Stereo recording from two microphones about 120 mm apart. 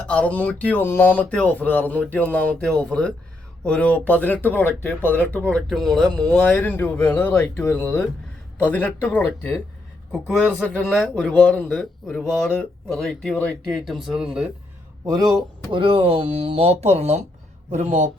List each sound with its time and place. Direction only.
0.1 s speech: 10° left (ahead or behind)
10.1 s speech: 5° left (ahead or behind)
13.7 s speech: centre (ahead or behind)
15.0 s speech: 30° right (ahead or behind)
15.7 s speech: 50° right (ahead or behind)
17.7 s speech: 80° right